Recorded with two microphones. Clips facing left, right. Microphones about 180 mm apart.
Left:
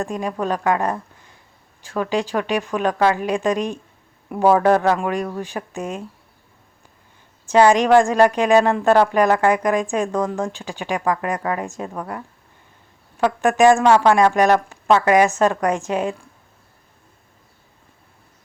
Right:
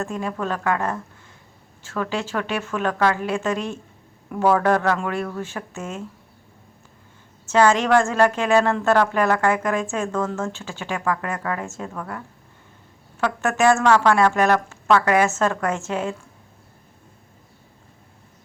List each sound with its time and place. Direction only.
0.0 s speech: 15° left (ahead or behind)
7.4 s speech: 15° left (ahead or behind)